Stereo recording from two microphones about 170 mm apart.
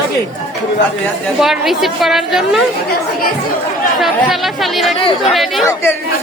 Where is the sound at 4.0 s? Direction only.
Centre (ahead or behind).